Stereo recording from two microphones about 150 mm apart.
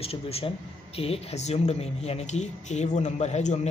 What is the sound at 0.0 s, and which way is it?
Speech, 40° left (ahead or behind).